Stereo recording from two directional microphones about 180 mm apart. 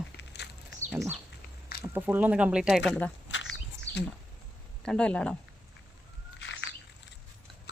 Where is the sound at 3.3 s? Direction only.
90° left.